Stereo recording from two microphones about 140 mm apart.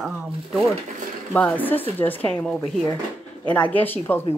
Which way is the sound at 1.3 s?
10° left (ahead or behind).